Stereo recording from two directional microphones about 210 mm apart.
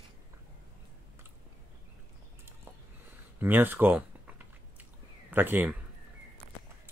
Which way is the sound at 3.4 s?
10° right (ahead or behind).